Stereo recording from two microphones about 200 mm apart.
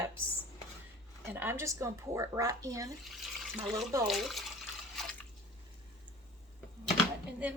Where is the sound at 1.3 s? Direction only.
10° right (ahead or behind).